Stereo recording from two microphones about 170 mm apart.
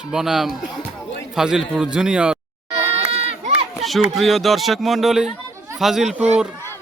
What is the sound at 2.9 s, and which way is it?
Goat, 35° right (ahead or behind).